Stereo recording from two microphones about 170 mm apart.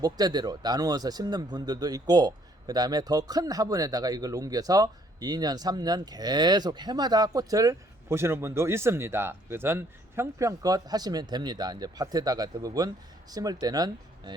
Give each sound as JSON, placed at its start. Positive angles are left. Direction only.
{"t": 0.0, "sound": "speech", "side_deg": -25}